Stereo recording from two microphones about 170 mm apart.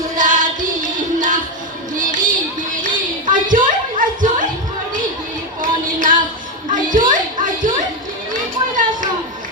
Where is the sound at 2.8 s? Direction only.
50° right (ahead or behind).